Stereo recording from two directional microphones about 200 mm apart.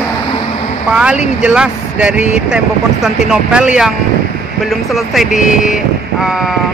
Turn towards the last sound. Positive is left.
turn(degrees=0)  # may be behind; listen again after turning